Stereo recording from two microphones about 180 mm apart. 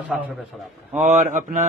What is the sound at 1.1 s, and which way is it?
Speech, 45° right (ahead or behind).